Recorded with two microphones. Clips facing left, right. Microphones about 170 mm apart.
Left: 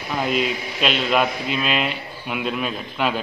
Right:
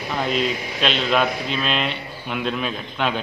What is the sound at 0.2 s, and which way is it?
A man's voice, 5° left (ahead or behind).